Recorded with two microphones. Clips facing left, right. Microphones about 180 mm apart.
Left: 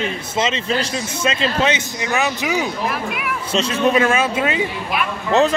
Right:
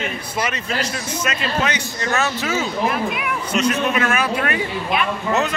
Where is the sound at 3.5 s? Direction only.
25° left (ahead or behind).